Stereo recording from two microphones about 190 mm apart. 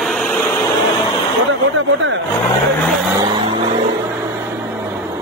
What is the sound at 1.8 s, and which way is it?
Vehicle, 75° right (ahead or behind).